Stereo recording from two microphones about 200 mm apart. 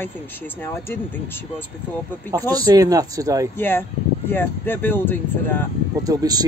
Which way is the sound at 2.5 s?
20° right (ahead or behind).